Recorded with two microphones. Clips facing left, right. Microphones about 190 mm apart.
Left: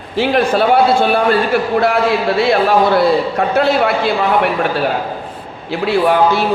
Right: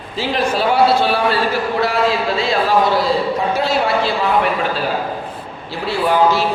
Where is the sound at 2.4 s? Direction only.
60° left (ahead or behind).